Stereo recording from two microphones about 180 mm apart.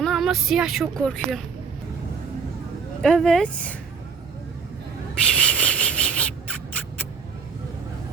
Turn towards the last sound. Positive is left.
turn(degrees=5)  # may be behind; listen again after turning